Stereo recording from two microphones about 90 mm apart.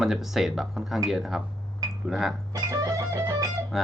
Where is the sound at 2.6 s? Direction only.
45° right (ahead or behind).